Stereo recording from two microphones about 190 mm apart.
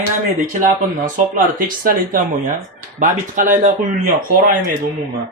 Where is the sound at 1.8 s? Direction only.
45° right (ahead or behind).